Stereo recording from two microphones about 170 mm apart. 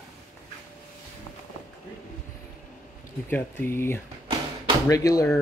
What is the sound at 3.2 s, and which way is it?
Speech, 10° left (ahead or behind).